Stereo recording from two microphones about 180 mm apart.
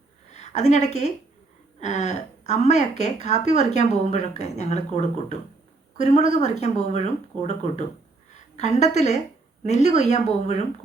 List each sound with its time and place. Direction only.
0.3 s a woman's voice: 40° left (ahead or behind)